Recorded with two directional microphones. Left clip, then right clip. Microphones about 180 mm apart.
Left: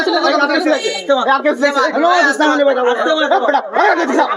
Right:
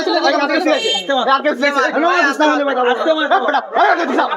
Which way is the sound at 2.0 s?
20° right (ahead or behind).